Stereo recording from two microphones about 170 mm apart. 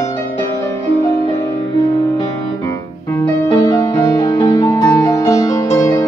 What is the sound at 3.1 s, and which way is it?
Music, 15° left (ahead or behind).